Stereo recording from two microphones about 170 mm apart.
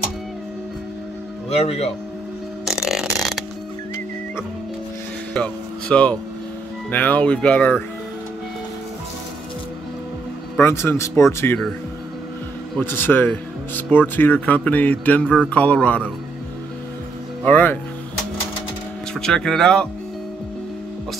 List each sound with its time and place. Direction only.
1.5 s speech: 40° left (ahead or behind)
2.6 s burping: centre (ahead or behind)
5.3 s speech: 5° left (ahead or behind)
10.6 s speech: 15° left (ahead or behind)
12.7 s speech: 10° left (ahead or behind)
17.5 s speech: 10° left (ahead or behind)
19.1 s speech: 5° left (ahead or behind)